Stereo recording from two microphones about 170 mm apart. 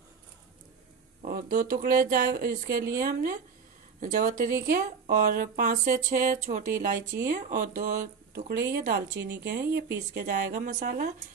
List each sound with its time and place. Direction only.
1.2 s speech: 50° right (ahead or behind)